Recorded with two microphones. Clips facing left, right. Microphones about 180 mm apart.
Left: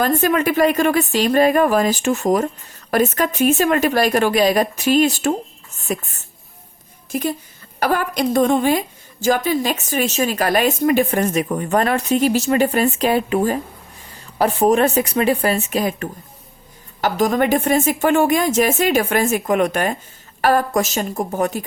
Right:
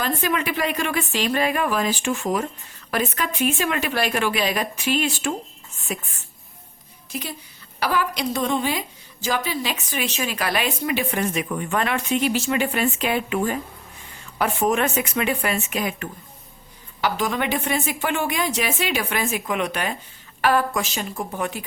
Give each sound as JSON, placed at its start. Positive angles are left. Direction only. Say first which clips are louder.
{"t": 0.0, "sound": "a woman's voice", "louder": "left 7 dB", "side_deg": 45}
{"t": 7.1, "sound": "a woman's voice", "louder": "left 10 dB", "side_deg": 50}